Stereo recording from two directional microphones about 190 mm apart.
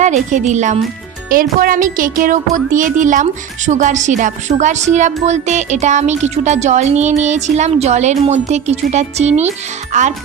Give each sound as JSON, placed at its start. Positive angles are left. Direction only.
{"t": 0.0, "sound": "speech", "side_deg": -40}